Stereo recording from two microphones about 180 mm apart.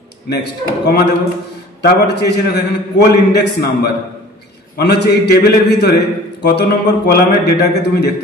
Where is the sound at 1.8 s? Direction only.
65° left (ahead or behind).